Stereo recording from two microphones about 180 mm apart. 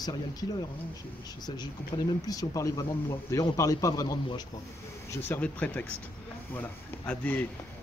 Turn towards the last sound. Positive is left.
turn(degrees=10)  # may be behind; listen again after turning